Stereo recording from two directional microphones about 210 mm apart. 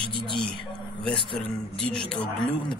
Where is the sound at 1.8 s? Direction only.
5° left (ahead or behind).